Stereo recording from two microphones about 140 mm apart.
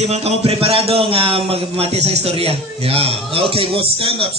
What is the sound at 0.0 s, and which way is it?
A man's voice, 50° right (ahead or behind).